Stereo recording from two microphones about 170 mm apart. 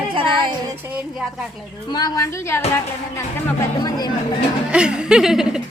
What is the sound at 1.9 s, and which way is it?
Speech, 25° left (ahead or behind).